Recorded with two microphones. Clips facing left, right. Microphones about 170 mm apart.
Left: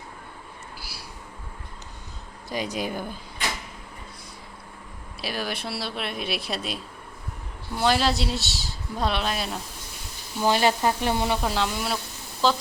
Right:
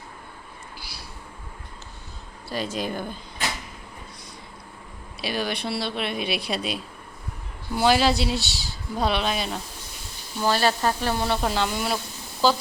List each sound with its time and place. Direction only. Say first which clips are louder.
0.8 s vehicle: even; 5° left (ahead or behind)
2.5 s speech: even; 15° left (ahead or behind)
5.2 s speech: right 3 dB; centre (ahead or behind)
7.8 s speech: right 3 dB; 5° right (ahead or behind)
10.4 s speech: left 1 dB; 15° left (ahead or behind)
11.4 s speech: right 1 dB; centre (ahead or behind)